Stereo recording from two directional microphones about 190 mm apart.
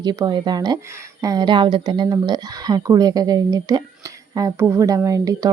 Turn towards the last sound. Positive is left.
turn(degrees=-20)  # may be behind; listen again after turning